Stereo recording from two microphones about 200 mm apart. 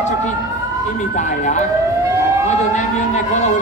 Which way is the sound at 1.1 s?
40° left (ahead or behind).